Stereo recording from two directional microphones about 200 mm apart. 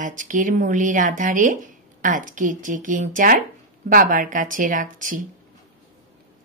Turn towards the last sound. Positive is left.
turn(degrees=-40)  # may be behind; listen again after turning